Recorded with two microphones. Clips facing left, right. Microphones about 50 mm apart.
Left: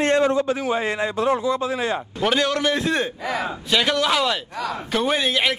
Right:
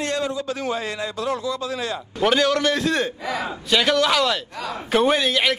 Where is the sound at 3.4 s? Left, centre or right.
Centre.